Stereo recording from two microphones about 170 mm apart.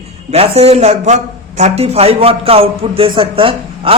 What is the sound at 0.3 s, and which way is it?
Speech, 40° right (ahead or behind).